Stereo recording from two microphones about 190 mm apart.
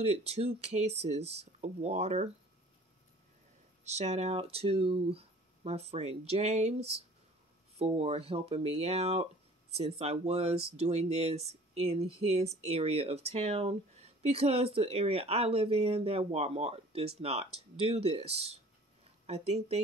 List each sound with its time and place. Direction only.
0.0 s speech: 35° right (ahead or behind)
3.8 s speech: 35° right (ahead or behind)